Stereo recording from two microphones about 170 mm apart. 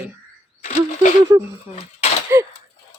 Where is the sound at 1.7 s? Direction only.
40° left (ahead or behind).